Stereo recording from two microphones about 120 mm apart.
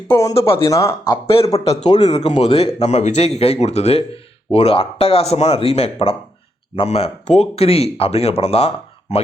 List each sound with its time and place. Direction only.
0.1 s speech: 25° left (ahead or behind)
1.1 s a man's voice: 50° left (ahead or behind)